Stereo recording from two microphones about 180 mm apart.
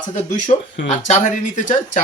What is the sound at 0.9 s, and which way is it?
Speech, 40° left (ahead or behind).